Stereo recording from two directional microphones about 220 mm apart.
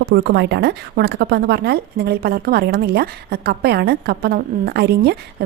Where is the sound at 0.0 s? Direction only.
50° right (ahead or behind).